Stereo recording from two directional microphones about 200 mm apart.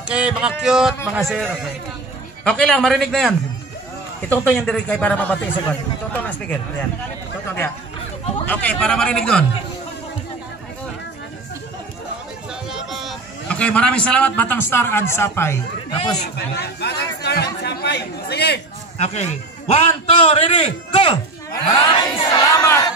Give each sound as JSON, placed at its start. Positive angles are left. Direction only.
{"t": 0.1, "sound": "a man's voice", "side_deg": -5}
{"t": 8.5, "sound": "a man's voice", "side_deg": 5}
{"t": 12.6, "sound": "a man's voice", "side_deg": 0}
{"t": 15.9, "sound": "speech", "side_deg": 25}
{"t": 16.3, "sound": "speech", "side_deg": 55}
{"t": 18.9, "sound": "a man's voice", "side_deg": 35}